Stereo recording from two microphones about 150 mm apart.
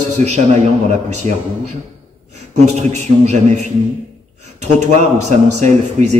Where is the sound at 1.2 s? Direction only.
50° right (ahead or behind).